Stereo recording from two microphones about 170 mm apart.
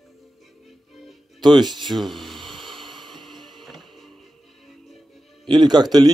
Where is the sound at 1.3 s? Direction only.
25° right (ahead or behind).